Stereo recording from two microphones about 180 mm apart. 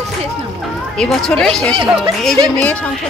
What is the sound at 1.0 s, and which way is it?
Speech, 5° left (ahead or behind).